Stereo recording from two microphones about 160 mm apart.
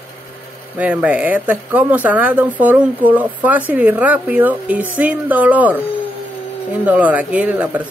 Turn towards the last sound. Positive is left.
turn(degrees=-10)  # may be behind; listen again after turning